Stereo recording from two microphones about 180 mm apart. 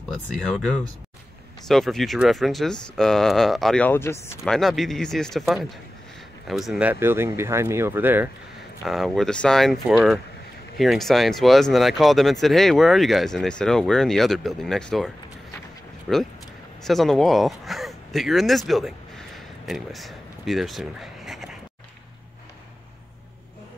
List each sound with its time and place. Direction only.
0.1 s speech: 5° left (ahead or behind)
4.5 s speech: centre (ahead or behind)
8.8 s speech: centre (ahead or behind)
16.1 s speech: 5° right (ahead or behind)